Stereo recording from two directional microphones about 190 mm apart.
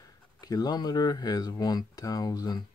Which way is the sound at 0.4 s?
20° left (ahead or behind).